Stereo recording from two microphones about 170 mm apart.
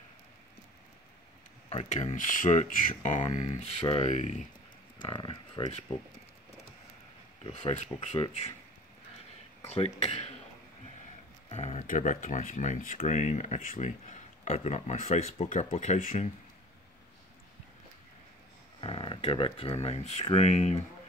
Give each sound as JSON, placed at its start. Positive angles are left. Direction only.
{"t": 1.7, "sound": "speech", "side_deg": 40}
{"t": 5.0, "sound": "speech", "side_deg": 30}
{"t": 7.4, "sound": "speech", "side_deg": 40}
{"t": 9.6, "sound": "speech", "side_deg": 40}
{"t": 11.4, "sound": "speech", "side_deg": 40}
{"t": 18.8, "sound": "speech", "side_deg": 35}